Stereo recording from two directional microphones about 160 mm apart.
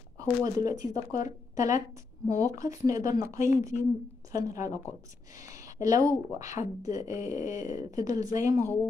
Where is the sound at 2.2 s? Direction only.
20° right (ahead or behind).